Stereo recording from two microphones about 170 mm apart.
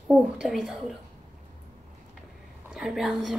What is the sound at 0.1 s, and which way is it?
Speech, 5° right (ahead or behind).